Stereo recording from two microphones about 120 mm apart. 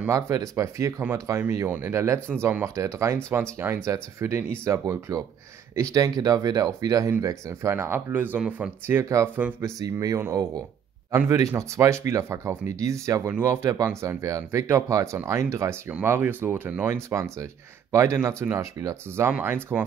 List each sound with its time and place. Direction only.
0.1 s speech: 25° right (ahead or behind)
9.8 s speech: 30° right (ahead or behind)
15.9 s speech: 15° right (ahead or behind)